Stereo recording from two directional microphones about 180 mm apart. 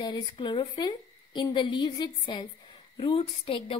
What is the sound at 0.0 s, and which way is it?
A woman's voice, 25° left (ahead or behind).